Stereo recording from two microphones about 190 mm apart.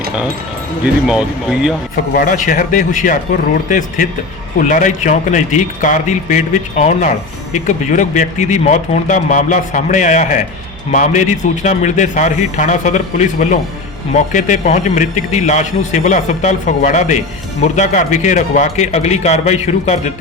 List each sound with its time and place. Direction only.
1.0 s speech: 5° right (ahead or behind)
2.1 s a man's voice: 45° left (ahead or behind)